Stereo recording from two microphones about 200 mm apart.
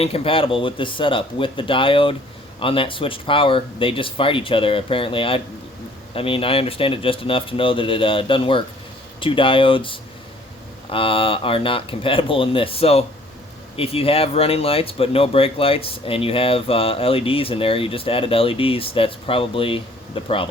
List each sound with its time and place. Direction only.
0.0 s speech: 30° left (ahead or behind)